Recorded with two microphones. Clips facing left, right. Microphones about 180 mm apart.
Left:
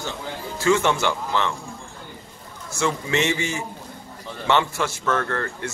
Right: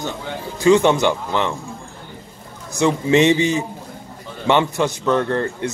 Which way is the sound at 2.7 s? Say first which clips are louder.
Right 8 dB; 20° right (ahead or behind).